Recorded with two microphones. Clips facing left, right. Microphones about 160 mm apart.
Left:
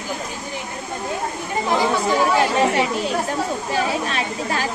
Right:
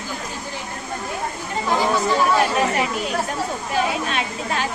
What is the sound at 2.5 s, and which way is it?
Speech, 30° left (ahead or behind).